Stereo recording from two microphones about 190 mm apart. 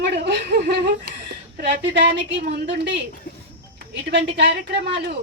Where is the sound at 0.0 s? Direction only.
60° right (ahead or behind).